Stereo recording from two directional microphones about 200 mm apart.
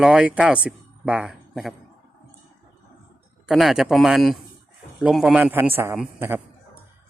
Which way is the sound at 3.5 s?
Centre (ahead or behind).